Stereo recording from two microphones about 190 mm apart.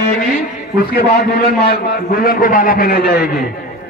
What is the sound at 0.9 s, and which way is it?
A man's voice, 55° left (ahead or behind).